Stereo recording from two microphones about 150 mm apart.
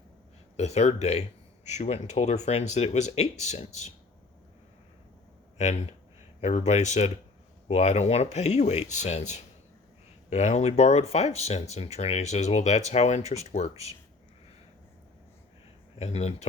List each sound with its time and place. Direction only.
0.5 s speech: 45° left (ahead or behind)
5.5 s speech: 50° left (ahead or behind)
16.0 s speech: 45° left (ahead or behind)